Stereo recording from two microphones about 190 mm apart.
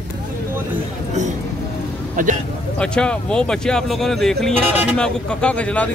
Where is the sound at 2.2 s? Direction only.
45° right (ahead or behind).